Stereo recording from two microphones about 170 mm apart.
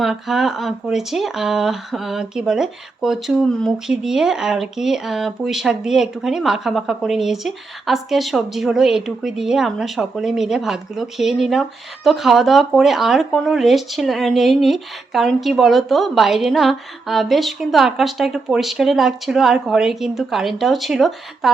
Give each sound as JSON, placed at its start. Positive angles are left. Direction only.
{"t": 0.0, "sound": "speech", "side_deg": 0}